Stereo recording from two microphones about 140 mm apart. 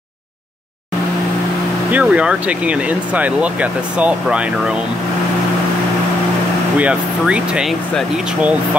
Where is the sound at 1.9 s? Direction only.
10° right (ahead or behind).